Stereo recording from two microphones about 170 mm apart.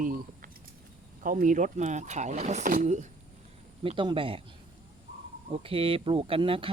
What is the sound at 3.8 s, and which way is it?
Speech, 30° right (ahead or behind).